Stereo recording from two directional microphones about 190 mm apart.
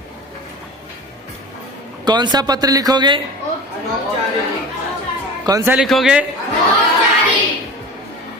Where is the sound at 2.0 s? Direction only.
20° right (ahead or behind).